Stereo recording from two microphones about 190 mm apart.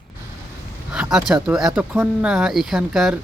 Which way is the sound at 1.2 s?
5° right (ahead or behind).